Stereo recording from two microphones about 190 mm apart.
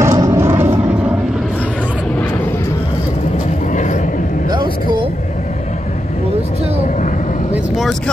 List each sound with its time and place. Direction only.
0.0 s vehicle: 15° right (ahead or behind)
3.7 s vehicle: 40° left (ahead or behind)
4.5 s vehicle: 25° right (ahead or behind)
7.5 s vehicle: centre (ahead or behind)